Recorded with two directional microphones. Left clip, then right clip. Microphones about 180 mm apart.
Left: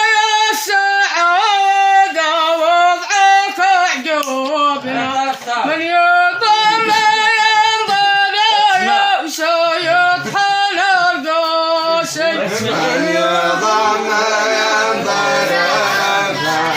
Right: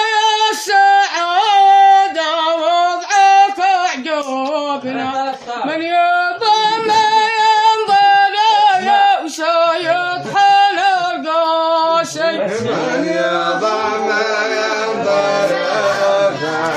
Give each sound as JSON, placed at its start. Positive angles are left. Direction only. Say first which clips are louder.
{"t": 0.0, "sound": "female singing", "louder": "left 1 dB", "side_deg": -45}
{"t": 1.3, "sound": "singing", "louder": "right 6 dB", "side_deg": -50}
{"t": 3.1, "sound": "child singing", "louder": "right 2 dB", "side_deg": -45}
{"t": 5.9, "sound": "a sound", "louder": "left 2 dB", "side_deg": -30}